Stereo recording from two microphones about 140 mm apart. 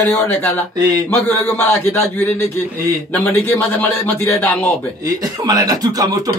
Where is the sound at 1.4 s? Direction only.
15° left (ahead or behind).